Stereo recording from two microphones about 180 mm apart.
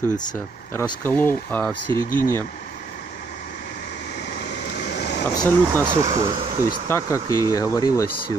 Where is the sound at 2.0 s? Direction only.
50° left (ahead or behind).